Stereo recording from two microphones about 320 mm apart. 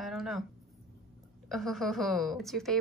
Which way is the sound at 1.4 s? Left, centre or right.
Centre.